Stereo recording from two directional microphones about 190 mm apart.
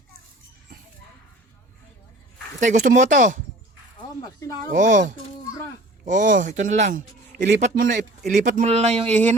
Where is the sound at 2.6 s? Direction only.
40° right (ahead or behind).